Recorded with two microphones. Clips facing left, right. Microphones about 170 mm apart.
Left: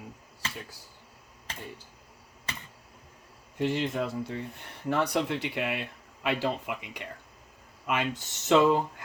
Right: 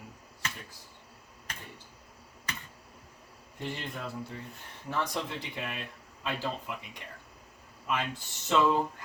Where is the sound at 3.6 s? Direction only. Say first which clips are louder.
Left 10 dB; 90° left.